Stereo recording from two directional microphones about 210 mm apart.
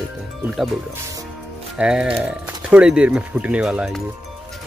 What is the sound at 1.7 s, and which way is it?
Speech, 5° right (ahead or behind).